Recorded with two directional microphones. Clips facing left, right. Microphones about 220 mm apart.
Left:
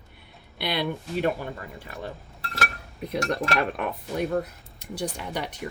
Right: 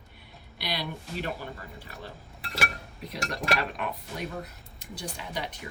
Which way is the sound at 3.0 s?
55° left (ahead or behind).